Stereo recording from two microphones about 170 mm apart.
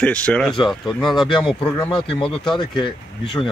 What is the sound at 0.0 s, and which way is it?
Speech, 10° left (ahead or behind).